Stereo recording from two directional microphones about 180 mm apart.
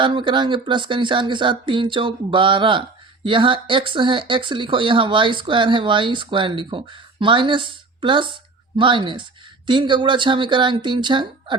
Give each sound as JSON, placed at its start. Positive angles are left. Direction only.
{"t": 0.0, "sound": "speech", "side_deg": -25}